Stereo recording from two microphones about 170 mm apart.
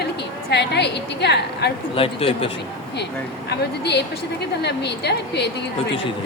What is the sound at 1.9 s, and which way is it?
Speech, 35° left (ahead or behind).